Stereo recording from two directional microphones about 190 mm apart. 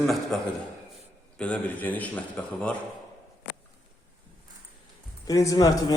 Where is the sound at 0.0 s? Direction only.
Centre (ahead or behind).